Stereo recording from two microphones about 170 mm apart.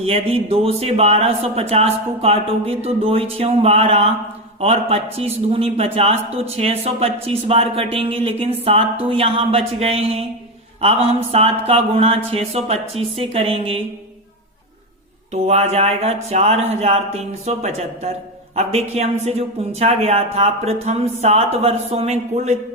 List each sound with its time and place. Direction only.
0.0 s a man's voice: 35° right (ahead or behind)
15.3 s a man's voice: 40° right (ahead or behind)